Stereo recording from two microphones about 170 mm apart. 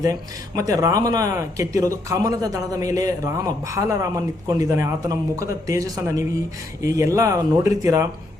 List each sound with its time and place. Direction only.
0.0 s speech: 20° right (ahead or behind)